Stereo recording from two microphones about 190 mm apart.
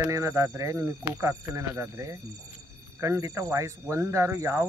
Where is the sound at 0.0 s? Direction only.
15° right (ahead or behind).